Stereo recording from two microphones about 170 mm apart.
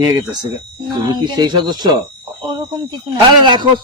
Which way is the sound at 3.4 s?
25° right (ahead or behind).